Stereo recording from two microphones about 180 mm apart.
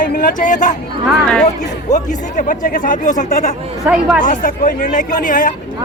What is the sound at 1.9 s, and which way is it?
Speech, 45° left (ahead or behind).